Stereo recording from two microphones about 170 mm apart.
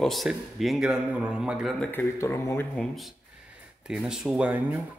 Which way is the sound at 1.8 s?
15° left (ahead or behind).